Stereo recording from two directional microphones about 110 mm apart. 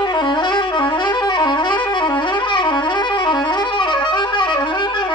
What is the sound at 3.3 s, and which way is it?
Music, 45° left (ahead or behind).